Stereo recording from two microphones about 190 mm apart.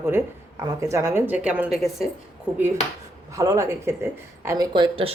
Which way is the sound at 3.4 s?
15° right (ahead or behind).